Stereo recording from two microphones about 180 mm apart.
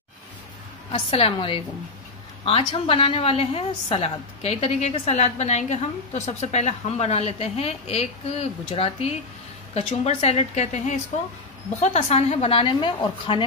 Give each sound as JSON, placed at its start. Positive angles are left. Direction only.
{"t": 0.9, "sound": "a woman's voice", "side_deg": 30}